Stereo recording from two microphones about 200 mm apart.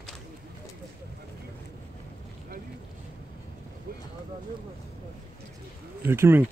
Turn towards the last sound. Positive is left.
turn(degrees=-10)  # may be behind; listen again after turning